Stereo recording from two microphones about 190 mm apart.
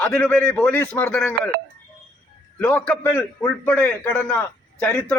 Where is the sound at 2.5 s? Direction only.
10° left (ahead or behind).